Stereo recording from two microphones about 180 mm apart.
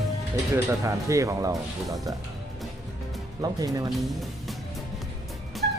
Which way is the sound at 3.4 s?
20° right (ahead or behind).